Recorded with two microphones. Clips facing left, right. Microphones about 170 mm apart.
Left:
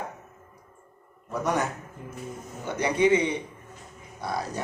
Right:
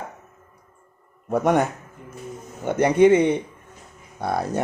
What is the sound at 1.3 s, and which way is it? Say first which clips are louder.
Speech: right 8 dB; 55° right (ahead or behind).